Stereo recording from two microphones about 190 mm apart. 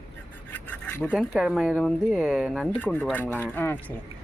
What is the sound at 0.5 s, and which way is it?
Filing, 10° left (ahead or behind).